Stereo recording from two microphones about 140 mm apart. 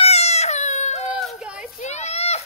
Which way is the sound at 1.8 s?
55° left (ahead or behind).